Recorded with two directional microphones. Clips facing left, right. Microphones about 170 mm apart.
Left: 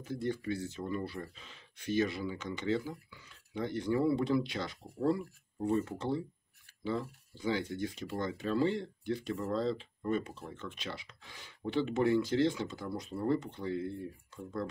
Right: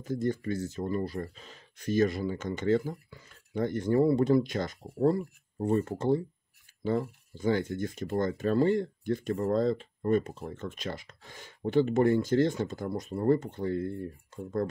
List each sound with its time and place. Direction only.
0.1 s speech: 45° right (ahead or behind)